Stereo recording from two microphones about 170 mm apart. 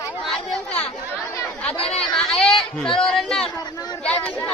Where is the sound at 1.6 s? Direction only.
5° left (ahead or behind).